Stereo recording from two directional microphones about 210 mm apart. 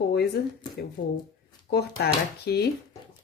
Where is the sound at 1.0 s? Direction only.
60° left (ahead or behind).